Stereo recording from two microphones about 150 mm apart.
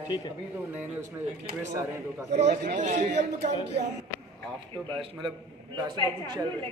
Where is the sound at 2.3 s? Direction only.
55° right (ahead or behind).